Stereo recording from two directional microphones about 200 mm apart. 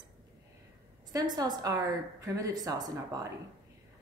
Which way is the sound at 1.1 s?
20° right (ahead or behind).